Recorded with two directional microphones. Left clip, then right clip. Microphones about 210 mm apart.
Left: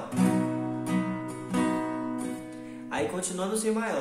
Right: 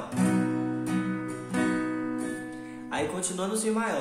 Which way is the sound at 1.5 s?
20° left (ahead or behind).